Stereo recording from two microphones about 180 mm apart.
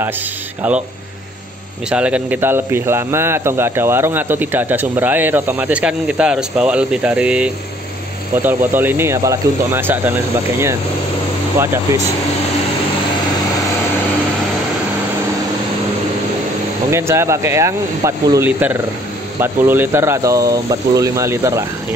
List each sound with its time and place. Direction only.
0.6 s speech: 10° right (ahead or behind)
1.9 s speech: 5° right (ahead or behind)
11.9 s speech: 15° right (ahead or behind)
16.9 s speech: 15° right (ahead or behind)